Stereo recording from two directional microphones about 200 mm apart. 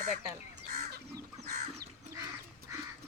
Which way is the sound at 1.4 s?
50° right (ahead or behind).